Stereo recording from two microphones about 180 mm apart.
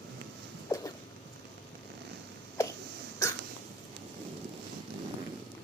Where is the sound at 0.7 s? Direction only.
20° left (ahead or behind).